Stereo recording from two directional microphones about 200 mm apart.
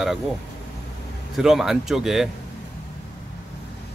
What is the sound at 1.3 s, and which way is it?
Speech, centre (ahead or behind).